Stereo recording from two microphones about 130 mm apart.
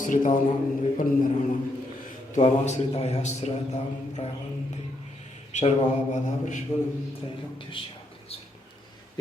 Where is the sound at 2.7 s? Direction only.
55° left (ahead or behind).